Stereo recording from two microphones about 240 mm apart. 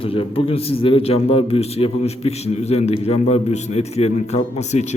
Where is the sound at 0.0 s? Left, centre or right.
Left.